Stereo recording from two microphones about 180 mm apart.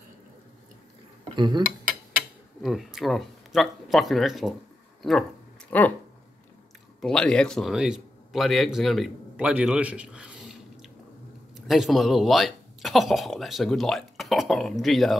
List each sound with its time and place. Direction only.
1.3 s cutlery: 25° right (ahead or behind)
2.6 s speech: centre (ahead or behind)
5.7 s speech: 10° left (ahead or behind)
7.0 s a man's voice: 5° left (ahead or behind)